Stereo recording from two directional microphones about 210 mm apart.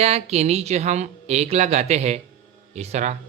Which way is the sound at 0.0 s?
30° right (ahead or behind).